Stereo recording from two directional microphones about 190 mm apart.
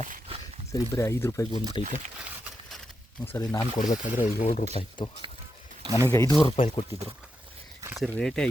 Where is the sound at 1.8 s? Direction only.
25° left (ahead or behind).